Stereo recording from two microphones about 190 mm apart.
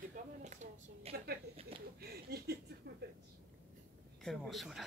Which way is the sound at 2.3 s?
55° right (ahead or behind).